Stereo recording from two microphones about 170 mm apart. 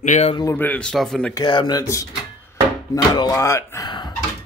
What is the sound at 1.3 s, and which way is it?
Speech, 25° left (ahead or behind).